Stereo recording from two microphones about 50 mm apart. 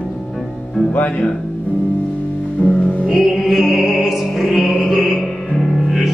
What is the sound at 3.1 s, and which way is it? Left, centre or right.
Music, centre.